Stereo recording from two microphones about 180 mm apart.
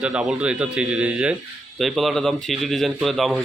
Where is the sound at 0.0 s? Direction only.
5° right (ahead or behind).